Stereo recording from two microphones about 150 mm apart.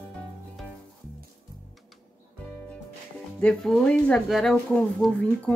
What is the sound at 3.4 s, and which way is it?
Speech, 5° left (ahead or behind).